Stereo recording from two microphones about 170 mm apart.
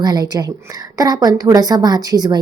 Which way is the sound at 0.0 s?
25° right (ahead or behind).